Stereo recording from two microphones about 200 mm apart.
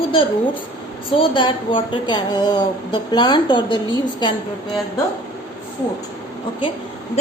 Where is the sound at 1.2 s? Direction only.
25° left (ahead or behind).